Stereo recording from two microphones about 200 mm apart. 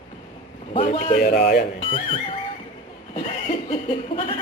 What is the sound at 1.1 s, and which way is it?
Speech, 45° left (ahead or behind).